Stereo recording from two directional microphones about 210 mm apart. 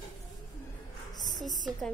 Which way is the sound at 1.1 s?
20° left (ahead or behind).